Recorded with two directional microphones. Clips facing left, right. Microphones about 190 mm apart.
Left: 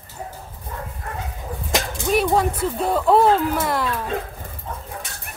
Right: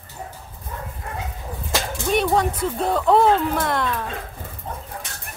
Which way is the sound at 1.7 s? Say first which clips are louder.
Left 2 dB; 15° left (ahead or behind).